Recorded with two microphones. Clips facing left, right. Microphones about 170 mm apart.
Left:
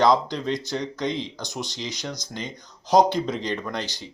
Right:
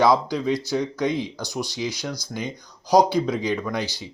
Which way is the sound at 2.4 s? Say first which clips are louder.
Right 4 dB; 20° left (ahead or behind).